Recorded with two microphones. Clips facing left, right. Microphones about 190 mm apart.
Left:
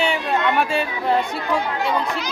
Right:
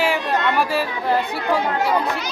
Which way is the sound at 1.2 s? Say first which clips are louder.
Right 2 dB; 45° right (ahead or behind).